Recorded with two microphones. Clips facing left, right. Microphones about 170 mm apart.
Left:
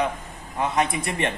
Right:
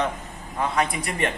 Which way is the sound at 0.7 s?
20° left (ahead or behind).